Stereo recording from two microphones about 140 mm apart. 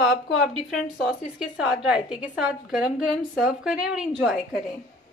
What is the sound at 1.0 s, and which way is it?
A woman's voice, 5° right (ahead or behind).